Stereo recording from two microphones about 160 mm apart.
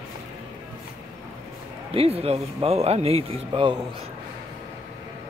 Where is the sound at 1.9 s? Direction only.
40° right (ahead or behind).